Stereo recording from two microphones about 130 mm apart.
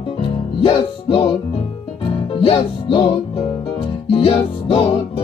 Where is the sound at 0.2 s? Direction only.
45° left (ahead or behind).